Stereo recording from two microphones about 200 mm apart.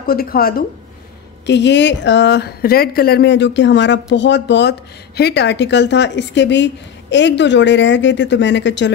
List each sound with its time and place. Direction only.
0.0 s speech: 50° left (ahead or behind)
1.4 s speech: 60° left (ahead or behind)